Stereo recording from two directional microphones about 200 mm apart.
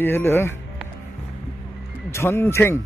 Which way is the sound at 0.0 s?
10° left (ahead or behind).